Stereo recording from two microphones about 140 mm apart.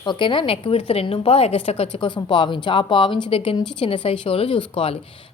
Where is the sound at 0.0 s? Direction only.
35° left (ahead or behind).